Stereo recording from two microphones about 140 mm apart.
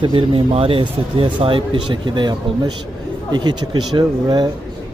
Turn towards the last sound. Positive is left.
turn(degrees=-30)  # may be behind; listen again after turning